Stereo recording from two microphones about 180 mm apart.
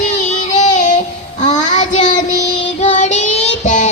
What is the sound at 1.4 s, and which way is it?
Child singing, 40° left (ahead or behind).